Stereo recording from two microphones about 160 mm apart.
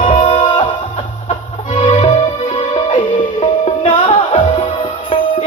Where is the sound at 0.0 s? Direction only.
45° left (ahead or behind).